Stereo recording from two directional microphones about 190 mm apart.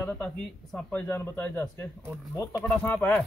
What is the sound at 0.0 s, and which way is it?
A man's voice, 5° left (ahead or behind).